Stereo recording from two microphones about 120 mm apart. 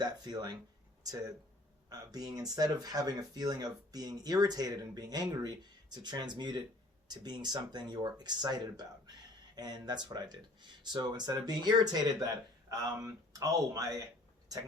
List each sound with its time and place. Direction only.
0.0 s speech: 35° right (ahead or behind)